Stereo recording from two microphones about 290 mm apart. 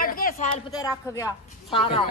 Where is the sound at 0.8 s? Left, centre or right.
Centre.